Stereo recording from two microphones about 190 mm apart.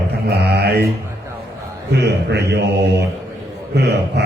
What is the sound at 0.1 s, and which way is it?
Mantra, 60° right (ahead or behind).